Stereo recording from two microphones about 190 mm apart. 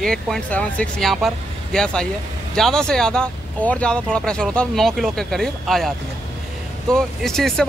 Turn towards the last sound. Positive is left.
turn(degrees=0)  # may be behind; listen again after turning